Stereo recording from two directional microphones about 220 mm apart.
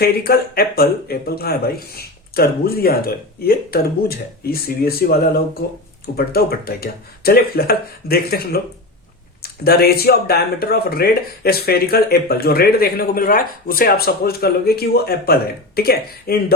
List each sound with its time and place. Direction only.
0.0 s speech: 45° left (ahead or behind)